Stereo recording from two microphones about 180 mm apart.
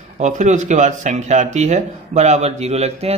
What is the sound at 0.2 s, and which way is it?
A man's voice, 40° right (ahead or behind).